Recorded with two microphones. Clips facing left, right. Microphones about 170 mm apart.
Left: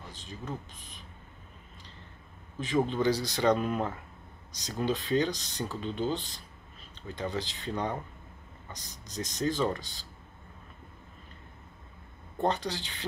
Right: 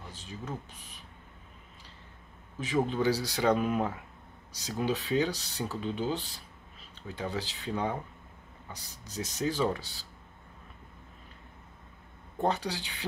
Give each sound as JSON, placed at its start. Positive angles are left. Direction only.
{"t": 0.1, "sound": "speech", "side_deg": -10}
{"t": 2.6, "sound": "speech", "side_deg": -10}
{"t": 12.4, "sound": "speech", "side_deg": -10}